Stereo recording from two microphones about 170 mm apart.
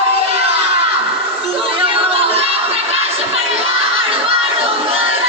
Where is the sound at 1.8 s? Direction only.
35° right (ahead or behind).